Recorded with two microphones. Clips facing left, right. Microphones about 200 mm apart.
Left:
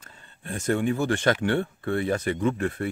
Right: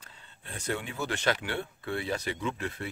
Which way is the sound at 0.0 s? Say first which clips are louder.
Left 7 dB; 45° left (ahead or behind).